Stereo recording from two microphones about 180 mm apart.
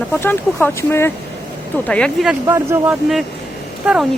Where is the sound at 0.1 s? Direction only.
10° left (ahead or behind).